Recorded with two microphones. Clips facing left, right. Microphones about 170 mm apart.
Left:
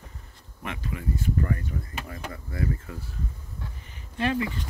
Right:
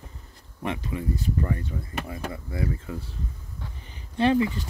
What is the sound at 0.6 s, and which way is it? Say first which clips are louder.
Speech: right 4 dB; 30° right (ahead or behind).